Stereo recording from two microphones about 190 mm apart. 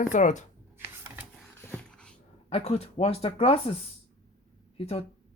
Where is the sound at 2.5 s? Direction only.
35° left (ahead or behind).